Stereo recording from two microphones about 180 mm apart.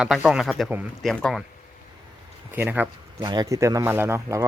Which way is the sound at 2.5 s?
10° right (ahead or behind).